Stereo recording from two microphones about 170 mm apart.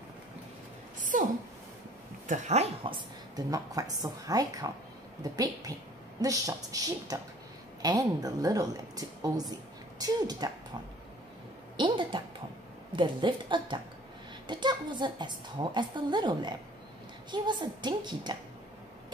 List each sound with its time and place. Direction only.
1.1 s a sound: 50° right (ahead or behind)
2.2 s a woman's voice: 45° right (ahead or behind); by 10.5 s 25° right (ahead or behind)
11.7 s a woman's voice: 30° right (ahead or behind)